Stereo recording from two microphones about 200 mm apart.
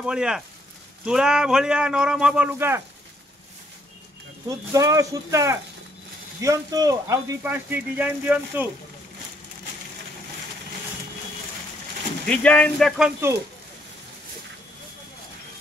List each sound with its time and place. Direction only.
0.0 s speech: 5° right (ahead or behind)
4.5 s speech: 15° right (ahead or behind)
12.3 s speech: 5° left (ahead or behind)